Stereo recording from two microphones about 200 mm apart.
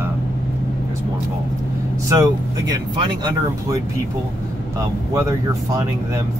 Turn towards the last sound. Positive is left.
turn(degrees=-15)  # may be behind; listen again after turning